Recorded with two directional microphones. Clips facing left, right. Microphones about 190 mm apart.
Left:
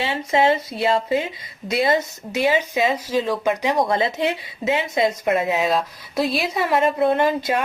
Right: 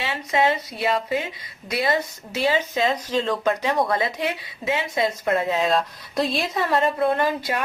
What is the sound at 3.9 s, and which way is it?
Speech, 25° left (ahead or behind).